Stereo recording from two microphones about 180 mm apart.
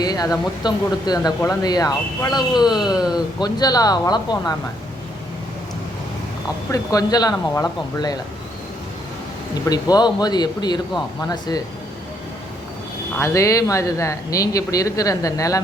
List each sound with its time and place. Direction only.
0.0 s speech: 20° left (ahead or behind)
2.8 s speech: 5° right (ahead or behind)
3.4 s speech: 20° left (ahead or behind)
6.7 s speech: 20° left (ahead or behind)
9.6 s speech: 20° left (ahead or behind)
13.1 s speech: 15° left (ahead or behind)